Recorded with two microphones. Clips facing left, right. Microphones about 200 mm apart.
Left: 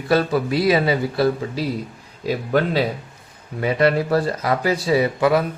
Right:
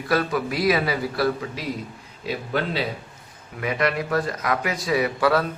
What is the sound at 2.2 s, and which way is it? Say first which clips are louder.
Speech: left 6 dB; 40° left (ahead or behind).